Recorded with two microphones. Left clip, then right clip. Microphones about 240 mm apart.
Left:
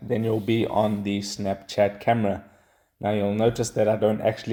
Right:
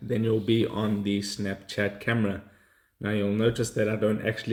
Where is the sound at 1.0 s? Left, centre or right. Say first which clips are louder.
Left 3 dB; centre.